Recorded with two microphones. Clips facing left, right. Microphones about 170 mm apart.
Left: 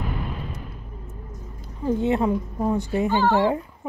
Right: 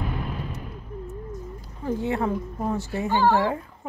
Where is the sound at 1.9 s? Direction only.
20° left (ahead or behind).